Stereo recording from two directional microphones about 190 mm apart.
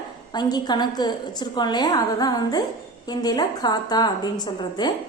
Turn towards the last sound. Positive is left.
turn(degrees=20)  # may be behind; listen again after turning